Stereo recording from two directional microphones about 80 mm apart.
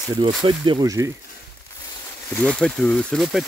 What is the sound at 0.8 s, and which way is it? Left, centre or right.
Speech, right.